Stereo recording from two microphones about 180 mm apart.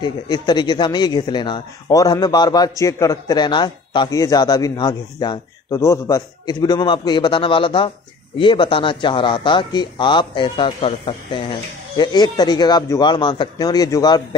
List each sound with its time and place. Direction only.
0.0 s a man's voice: 25° left (ahead or behind)